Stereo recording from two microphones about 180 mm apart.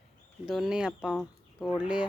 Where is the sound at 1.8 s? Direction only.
5° right (ahead or behind).